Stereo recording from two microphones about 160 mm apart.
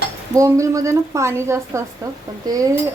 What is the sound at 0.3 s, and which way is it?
A woman's voice, 20° right (ahead or behind).